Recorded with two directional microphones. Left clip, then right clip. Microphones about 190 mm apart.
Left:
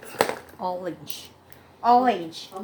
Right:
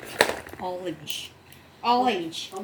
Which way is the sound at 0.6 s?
25° left (ahead or behind).